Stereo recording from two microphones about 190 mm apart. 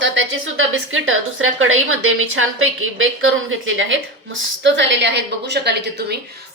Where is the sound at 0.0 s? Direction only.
85° right.